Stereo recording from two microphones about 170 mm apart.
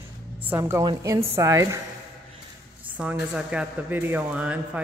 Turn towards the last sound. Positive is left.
turn(degrees=-10)  # may be behind; listen again after turning